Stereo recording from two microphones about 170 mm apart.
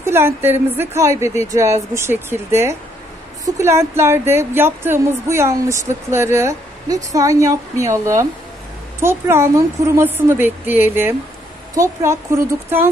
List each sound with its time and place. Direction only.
0.0 s speech: 15° right (ahead or behind)